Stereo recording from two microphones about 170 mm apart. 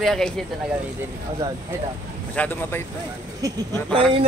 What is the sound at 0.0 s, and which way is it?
Speech, centre (ahead or behind).